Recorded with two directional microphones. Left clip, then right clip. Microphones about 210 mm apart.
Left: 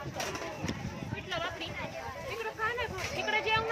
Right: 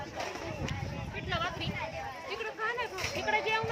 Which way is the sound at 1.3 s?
45° right (ahead or behind).